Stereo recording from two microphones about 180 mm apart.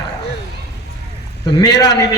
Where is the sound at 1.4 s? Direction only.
20° left (ahead or behind).